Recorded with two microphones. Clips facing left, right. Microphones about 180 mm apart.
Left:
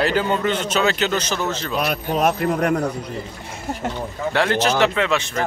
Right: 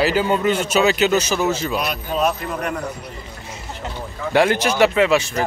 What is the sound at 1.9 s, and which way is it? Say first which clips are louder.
Speech: left 1 dB; 55° left (ahead or behind).